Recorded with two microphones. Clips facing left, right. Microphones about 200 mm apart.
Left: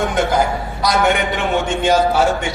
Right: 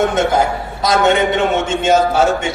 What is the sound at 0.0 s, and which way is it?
A man's voice, 25° right (ahead or behind).